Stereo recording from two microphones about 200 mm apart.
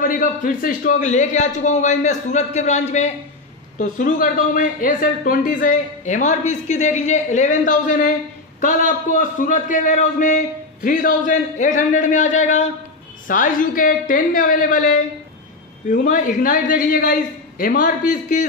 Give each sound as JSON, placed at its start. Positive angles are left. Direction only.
{"t": 0.0, "sound": "speech", "side_deg": 45}